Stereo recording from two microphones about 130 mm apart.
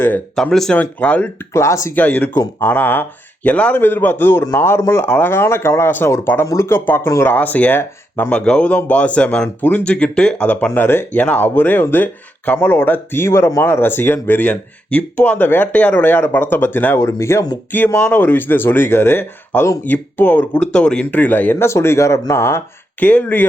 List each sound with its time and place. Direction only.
0.3 s speech: 5° left (ahead or behind)
1.5 s speech: 20° left (ahead or behind)
17.7 s speech: 15° left (ahead or behind)